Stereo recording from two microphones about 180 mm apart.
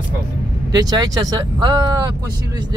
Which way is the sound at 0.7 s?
20° right (ahead or behind).